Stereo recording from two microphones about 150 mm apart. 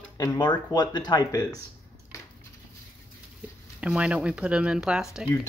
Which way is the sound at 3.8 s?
5° right (ahead or behind).